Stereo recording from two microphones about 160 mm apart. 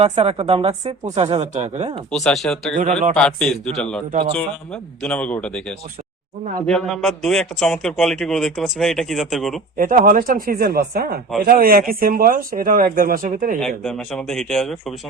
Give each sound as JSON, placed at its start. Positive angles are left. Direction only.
{"t": 0.0, "sound": "speech", "side_deg": -35}
{"t": 2.0, "sound": "a man's voice", "side_deg": 0}
{"t": 9.7, "sound": "speech", "side_deg": -60}
{"t": 13.6, "sound": "a man's voice", "side_deg": 5}